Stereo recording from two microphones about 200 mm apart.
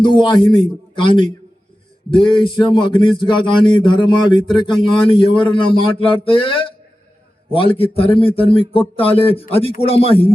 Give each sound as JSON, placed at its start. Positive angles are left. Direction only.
{"t": 0.0, "sound": "a man's voice", "side_deg": 25}